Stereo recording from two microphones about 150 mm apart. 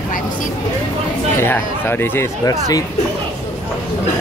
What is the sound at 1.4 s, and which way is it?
Speech, 15° left (ahead or behind).